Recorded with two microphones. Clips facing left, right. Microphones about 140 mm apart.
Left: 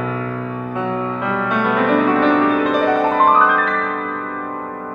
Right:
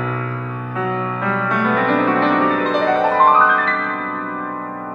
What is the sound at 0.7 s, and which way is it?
Music, 25° left (ahead or behind).